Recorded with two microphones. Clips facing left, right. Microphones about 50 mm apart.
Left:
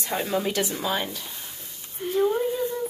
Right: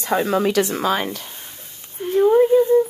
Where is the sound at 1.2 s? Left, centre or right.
Right.